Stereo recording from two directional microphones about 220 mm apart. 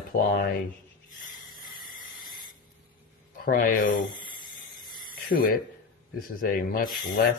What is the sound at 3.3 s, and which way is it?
Speech, 40° left (ahead or behind).